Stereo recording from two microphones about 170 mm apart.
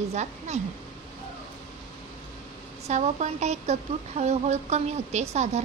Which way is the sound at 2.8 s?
40° right (ahead or behind).